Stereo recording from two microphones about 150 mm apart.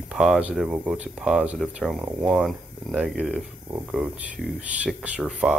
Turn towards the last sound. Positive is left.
turn(degrees=-5)  # may be behind; listen again after turning